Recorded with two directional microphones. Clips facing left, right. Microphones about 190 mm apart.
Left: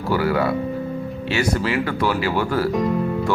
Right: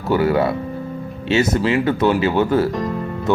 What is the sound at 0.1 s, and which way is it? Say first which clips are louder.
Speech: right 3 dB; 25° right (ahead or behind).